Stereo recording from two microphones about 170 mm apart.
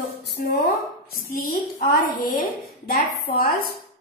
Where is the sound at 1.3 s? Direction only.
55° left (ahead or behind).